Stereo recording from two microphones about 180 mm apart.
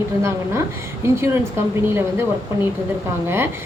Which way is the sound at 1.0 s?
15° right (ahead or behind).